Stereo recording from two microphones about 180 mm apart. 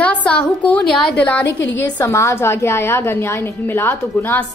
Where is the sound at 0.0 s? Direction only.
5° left (ahead or behind).